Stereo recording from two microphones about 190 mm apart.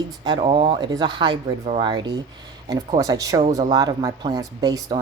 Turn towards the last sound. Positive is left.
turn(degrees=-20)  # may be behind; listen again after turning